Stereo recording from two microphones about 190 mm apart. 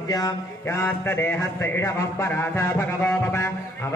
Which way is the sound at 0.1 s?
15° left (ahead or behind).